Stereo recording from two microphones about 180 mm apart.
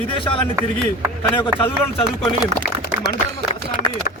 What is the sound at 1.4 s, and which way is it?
Speech, 25° left (ahead or behind).